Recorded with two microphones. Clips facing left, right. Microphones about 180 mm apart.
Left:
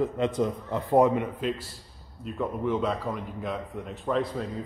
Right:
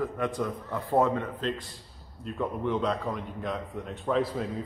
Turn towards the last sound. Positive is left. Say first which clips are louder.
# even
turn(degrees=0)  # may be behind; listen again after turning